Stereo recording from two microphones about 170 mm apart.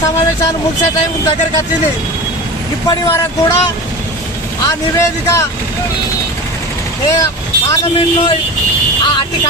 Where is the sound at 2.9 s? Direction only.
15° left (ahead or behind).